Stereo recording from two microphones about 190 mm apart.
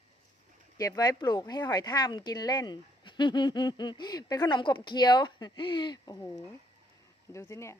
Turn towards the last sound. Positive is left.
turn(degrees=15)  # may be behind; listen again after turning